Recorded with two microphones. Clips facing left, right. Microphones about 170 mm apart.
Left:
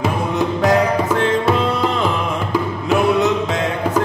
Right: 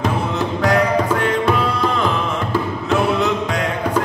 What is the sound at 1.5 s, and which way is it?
Tabla, 20° left (ahead or behind).